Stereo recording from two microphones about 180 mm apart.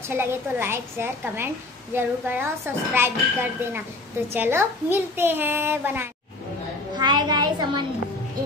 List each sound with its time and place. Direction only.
0.1 s speech: 15° right (ahead or behind)
7.0 s a child's voice: 25° right (ahead or behind)